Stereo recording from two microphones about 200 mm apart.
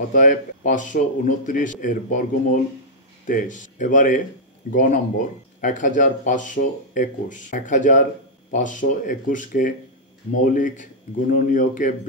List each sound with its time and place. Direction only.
0.1 s speech: 40° left (ahead or behind)